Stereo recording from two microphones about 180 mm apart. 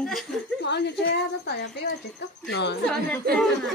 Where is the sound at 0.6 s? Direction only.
70° left (ahead or behind).